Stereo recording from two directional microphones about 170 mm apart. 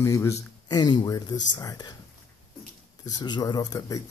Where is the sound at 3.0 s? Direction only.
25° left (ahead or behind).